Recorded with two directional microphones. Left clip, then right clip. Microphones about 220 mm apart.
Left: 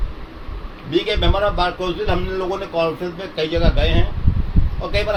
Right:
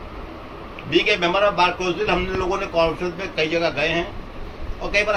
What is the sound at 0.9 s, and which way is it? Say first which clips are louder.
Speech: right 1 dB; 20° left (ahead or behind).